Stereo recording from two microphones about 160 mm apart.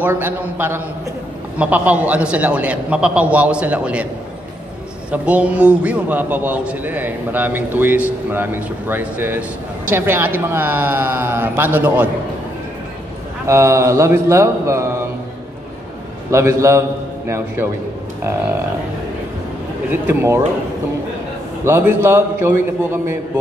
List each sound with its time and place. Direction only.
0.0 s a man's voice: 15° right (ahead or behind)
5.1 s a man's voice: 10° right (ahead or behind)
13.5 s a man's voice: 15° right (ahead or behind)
16.3 s a man's voice: 15° right (ahead or behind)
19.9 s a man's voice: 15° right (ahead or behind)
21.6 s a man's voice: 15° right (ahead or behind)